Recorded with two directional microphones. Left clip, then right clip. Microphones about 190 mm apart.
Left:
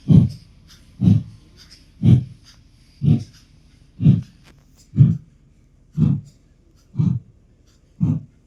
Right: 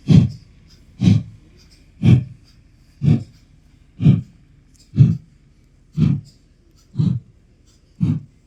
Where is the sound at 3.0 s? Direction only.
20° right (ahead or behind).